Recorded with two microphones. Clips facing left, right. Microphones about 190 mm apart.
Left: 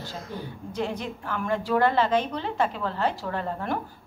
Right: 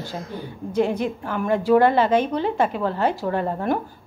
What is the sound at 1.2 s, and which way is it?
A woman's voice, 10° right (ahead or behind).